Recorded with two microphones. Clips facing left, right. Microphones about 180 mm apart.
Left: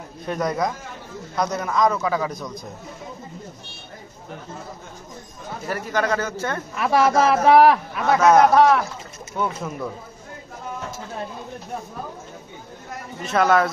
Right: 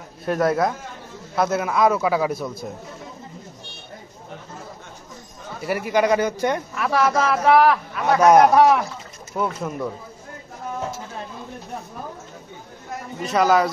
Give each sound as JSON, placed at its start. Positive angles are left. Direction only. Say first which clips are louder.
{"t": 0.2, "sound": "a man's voice", "louder": "right 4 dB", "side_deg": -5}
{"t": 5.7, "sound": "a man's voice", "louder": "right 4 dB", "side_deg": -10}
{"t": 6.7, "sound": "a man's voice", "louder": "left 7 dB", "side_deg": 20}
{"t": 8.2, "sound": "a man's voice", "louder": "right 1 dB", "side_deg": -10}
{"t": 9.4, "sound": "a man's voice", "louder": "right 1 dB", "side_deg": 0}
{"t": 13.2, "sound": "a man's voice", "louder": "even", "side_deg": 0}